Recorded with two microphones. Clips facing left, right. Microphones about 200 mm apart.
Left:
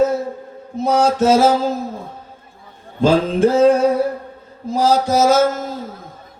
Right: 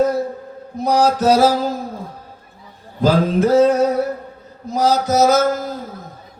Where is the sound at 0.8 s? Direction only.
25° left (ahead or behind).